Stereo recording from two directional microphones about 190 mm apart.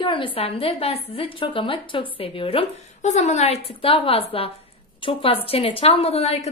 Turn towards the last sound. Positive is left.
turn(degrees=35)  # may be behind; listen again after turning